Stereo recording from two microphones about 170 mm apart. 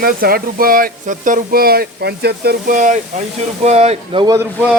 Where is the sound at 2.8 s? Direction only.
45° right (ahead or behind).